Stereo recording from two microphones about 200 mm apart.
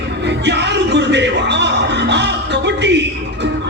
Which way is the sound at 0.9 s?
60° right (ahead or behind).